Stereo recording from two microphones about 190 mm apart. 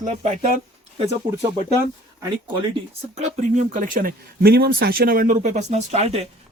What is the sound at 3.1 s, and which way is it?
Speech, 40° right (ahead or behind).